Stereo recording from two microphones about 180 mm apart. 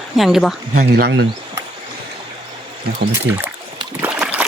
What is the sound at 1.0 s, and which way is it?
Speech, 65° right (ahead or behind).